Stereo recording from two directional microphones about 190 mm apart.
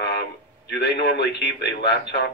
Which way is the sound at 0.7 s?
60° left (ahead or behind).